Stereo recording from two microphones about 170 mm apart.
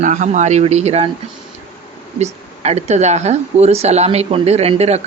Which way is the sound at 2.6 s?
40° right (ahead or behind).